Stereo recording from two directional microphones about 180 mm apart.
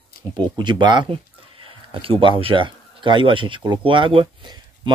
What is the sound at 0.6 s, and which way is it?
Speech, 25° right (ahead or behind).